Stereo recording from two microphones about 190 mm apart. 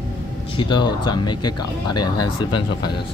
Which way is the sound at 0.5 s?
25° left (ahead or behind).